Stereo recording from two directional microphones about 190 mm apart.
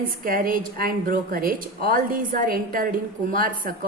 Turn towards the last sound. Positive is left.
turn(degrees=-45)  # may be behind; listen again after turning